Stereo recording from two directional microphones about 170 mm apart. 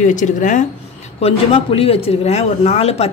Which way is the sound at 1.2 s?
35° left (ahead or behind).